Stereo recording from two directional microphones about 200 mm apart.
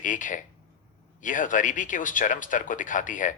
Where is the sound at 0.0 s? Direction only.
40° left (ahead or behind).